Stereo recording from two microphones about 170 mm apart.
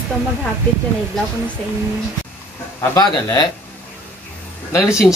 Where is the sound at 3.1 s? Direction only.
25° left (ahead or behind).